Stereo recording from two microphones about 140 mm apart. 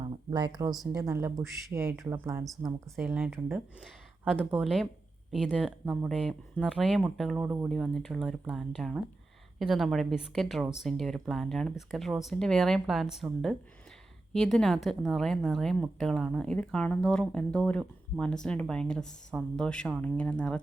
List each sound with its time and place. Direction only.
0.0 s speech: 30° right (ahead or behind); by 3.3 s 10° right (ahead or behind)
4.5 s speech: centre (ahead or behind)
7.7 s speech: centre (ahead or behind)
14.3 s speech: centre (ahead or behind)